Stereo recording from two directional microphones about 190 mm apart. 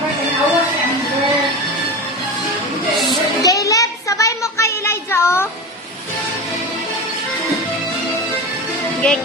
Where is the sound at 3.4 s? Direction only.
20° left (ahead or behind).